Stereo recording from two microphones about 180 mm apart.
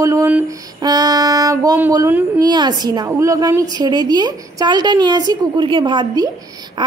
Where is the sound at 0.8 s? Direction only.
20° right (ahead or behind).